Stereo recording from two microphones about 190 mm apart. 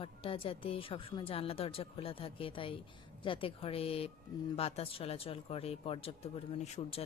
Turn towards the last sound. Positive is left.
turn(degrees=35)  # may be behind; listen again after turning